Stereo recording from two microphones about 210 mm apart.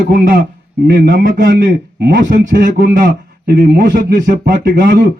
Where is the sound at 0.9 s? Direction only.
50° right (ahead or behind).